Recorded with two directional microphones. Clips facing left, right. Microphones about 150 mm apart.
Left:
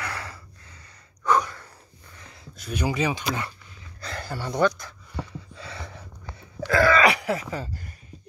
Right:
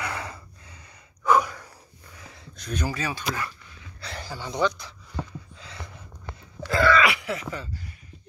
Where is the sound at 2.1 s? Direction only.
5° right (ahead or behind); by 3.5 s 20° left (ahead or behind).